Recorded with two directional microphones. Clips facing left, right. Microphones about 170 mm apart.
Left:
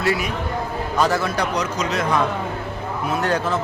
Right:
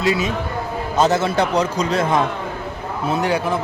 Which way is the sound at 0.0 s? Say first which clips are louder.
Right 2 dB; 20° right (ahead or behind).